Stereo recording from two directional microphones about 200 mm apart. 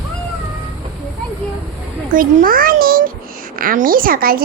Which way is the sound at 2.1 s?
45° right (ahead or behind).